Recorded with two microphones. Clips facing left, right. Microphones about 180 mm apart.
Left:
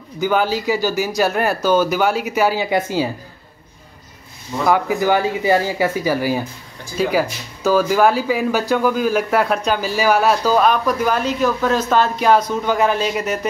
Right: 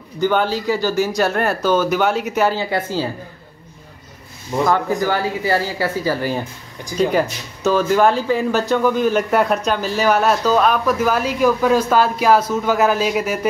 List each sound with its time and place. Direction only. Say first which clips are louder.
0.2 s speech: even; 5° left (ahead or behind)
4.6 s speech: left 3 dB; 10° left (ahead or behind); by 13.5 s 5° right (ahead or behind)